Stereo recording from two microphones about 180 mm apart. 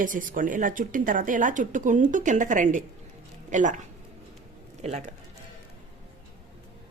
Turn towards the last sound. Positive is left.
turn(degrees=-40)  # may be behind; listen again after turning